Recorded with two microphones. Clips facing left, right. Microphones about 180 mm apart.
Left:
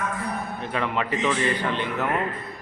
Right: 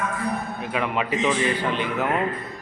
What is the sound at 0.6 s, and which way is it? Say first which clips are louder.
A man's voice: even; 10° right (ahead or behind).